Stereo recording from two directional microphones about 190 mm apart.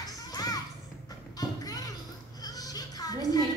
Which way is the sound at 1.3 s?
20° left (ahead or behind).